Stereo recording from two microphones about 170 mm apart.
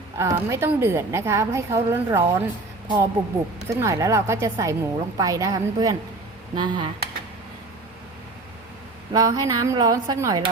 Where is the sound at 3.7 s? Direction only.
15° right (ahead or behind).